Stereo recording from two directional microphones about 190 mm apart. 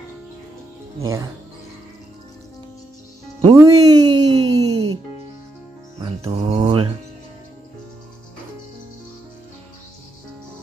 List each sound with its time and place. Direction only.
0.9 s speech: 15° right (ahead or behind)
3.5 s a sound: 20° right (ahead or behind)
4.6 s music: 30° right (ahead or behind)